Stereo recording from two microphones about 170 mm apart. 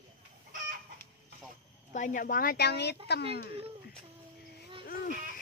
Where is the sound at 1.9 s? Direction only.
50° left (ahead or behind); by 2.9 s 75° left (ahead or behind).